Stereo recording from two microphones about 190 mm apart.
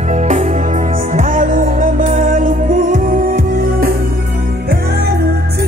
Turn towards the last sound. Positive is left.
turn(degrees=-50)  # may be behind; listen again after turning